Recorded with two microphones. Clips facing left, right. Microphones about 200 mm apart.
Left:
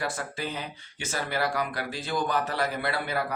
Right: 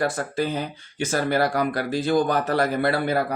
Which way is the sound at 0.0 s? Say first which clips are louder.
Right 8 dB; 45° right (ahead or behind).